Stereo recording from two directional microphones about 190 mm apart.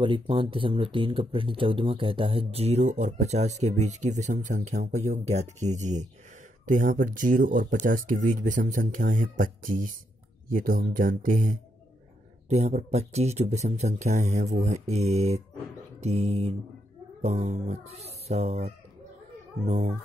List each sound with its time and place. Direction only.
0.0 s speech: 25° right (ahead or behind)